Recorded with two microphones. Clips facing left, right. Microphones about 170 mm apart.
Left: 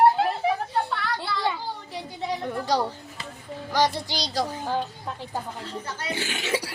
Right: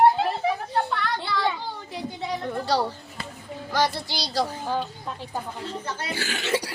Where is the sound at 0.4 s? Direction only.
Centre (ahead or behind).